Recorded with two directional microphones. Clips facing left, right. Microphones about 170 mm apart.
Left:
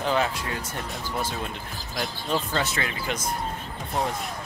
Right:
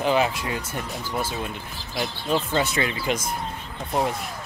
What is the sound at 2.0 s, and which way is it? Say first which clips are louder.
Speech: right 3 dB; 10° right (ahead or behind).